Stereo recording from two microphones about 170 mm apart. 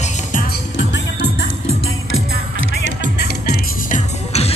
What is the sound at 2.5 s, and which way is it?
Music, 90° left.